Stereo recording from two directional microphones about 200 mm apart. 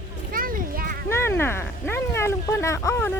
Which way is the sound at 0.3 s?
45° right (ahead or behind).